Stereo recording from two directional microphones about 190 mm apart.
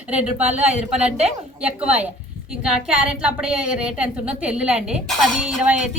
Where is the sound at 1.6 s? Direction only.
5° right (ahead or behind).